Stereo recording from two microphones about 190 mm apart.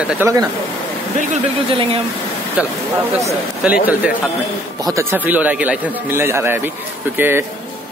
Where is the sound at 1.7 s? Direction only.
30° right (ahead or behind).